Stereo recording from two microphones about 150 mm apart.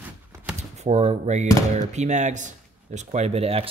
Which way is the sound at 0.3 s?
10° right (ahead or behind).